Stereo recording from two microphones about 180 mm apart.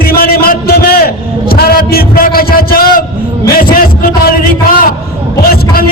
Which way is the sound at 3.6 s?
55° left (ahead or behind).